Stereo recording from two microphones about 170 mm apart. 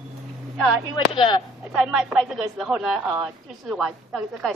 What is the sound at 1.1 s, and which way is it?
Speech, 25° left (ahead or behind).